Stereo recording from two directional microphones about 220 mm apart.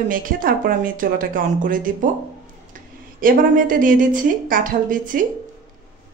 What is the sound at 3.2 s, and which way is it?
A woman's voice, 40° right (ahead or behind).